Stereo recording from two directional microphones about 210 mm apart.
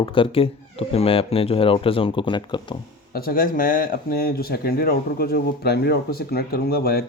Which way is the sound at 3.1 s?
45° left (ahead or behind).